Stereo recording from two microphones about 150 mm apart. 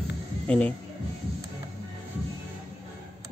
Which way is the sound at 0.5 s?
10° left (ahead or behind).